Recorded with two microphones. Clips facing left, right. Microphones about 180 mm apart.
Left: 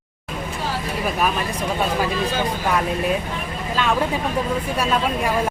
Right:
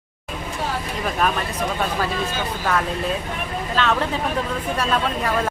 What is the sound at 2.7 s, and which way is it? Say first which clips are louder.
Speech: left 2 dB; 10° left (ahead or behind).